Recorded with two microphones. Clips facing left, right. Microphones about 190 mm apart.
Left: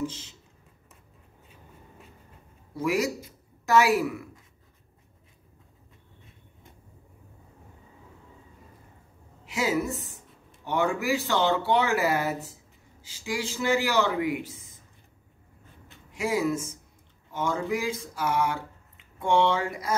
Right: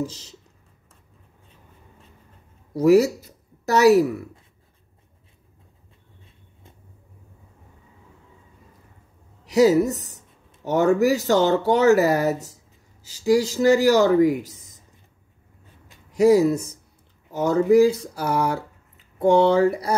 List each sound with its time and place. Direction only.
0.0 s speech: 40° right (ahead or behind)
2.7 s a woman's voice: 40° right (ahead or behind)
9.4 s speech: 40° right (ahead or behind)
16.1 s speech: 40° right (ahead or behind)